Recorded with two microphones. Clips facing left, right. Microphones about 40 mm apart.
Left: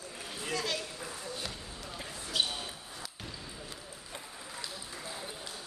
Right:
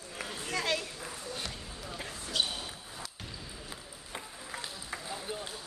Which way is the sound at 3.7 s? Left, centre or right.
Centre.